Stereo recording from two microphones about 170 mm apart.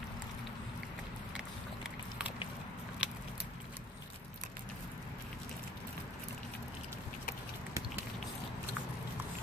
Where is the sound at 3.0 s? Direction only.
5° right (ahead or behind).